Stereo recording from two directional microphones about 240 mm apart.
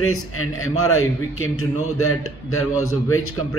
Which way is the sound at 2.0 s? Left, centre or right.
Left.